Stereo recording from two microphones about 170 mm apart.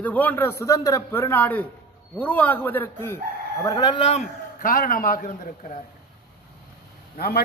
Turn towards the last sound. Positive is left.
turn(degrees=65)  # may be behind; listen again after turning